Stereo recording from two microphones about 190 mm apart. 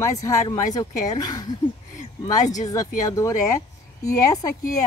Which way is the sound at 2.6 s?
20° left (ahead or behind).